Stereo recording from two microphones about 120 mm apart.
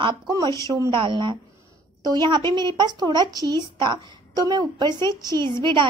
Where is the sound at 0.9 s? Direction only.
40° right (ahead or behind).